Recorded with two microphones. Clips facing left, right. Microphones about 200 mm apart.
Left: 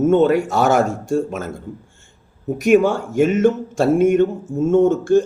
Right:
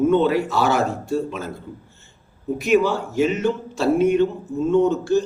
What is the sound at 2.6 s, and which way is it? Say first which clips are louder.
Speech: left 4 dB; 50° left (ahead or behind).